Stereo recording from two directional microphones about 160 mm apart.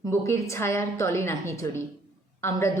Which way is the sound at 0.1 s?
15° left (ahead or behind).